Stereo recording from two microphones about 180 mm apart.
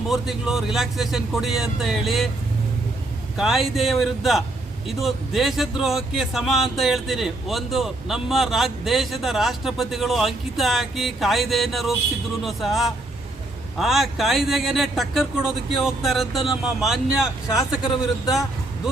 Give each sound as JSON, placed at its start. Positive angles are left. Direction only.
{"t": 0.1, "sound": "speech", "side_deg": 0}
{"t": 3.3, "sound": "speech", "side_deg": 0}